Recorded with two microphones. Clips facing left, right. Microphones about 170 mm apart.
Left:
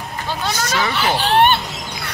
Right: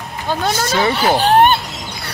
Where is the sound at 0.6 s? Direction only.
30° right (ahead or behind).